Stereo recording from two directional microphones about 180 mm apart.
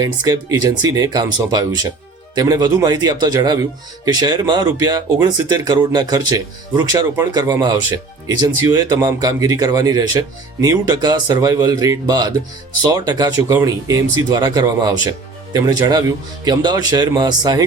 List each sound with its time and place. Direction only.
0.0 s speech: 20° right (ahead or behind)